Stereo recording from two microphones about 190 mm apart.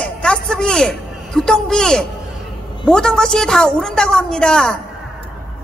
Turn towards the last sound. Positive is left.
turn(degrees=5)  # may be behind; listen again after turning